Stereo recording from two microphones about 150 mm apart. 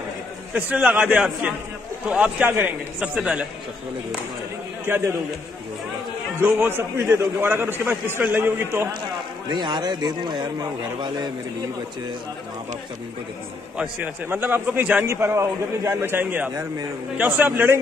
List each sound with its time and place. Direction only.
0.5 s a man's voice: 10° right (ahead or behind)
4.8 s a man's voice: 15° right (ahead or behind)
6.4 s a man's voice: 15° right (ahead or behind)
9.5 s a man's voice: 30° right (ahead or behind)
13.7 s a man's voice: 10° right (ahead or behind)